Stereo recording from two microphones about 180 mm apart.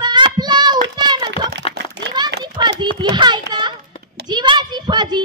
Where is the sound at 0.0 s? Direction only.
25° right (ahead or behind).